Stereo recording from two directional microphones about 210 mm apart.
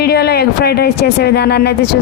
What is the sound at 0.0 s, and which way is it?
Speech, 50° left (ahead or behind).